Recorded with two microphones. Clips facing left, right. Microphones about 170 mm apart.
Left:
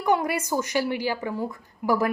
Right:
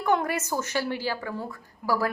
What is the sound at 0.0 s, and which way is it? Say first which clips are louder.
A woman's voice: left 2 dB; 10° left (ahead or behind).